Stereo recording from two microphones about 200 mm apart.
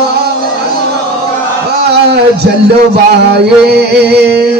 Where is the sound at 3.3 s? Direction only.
55° right (ahead or behind).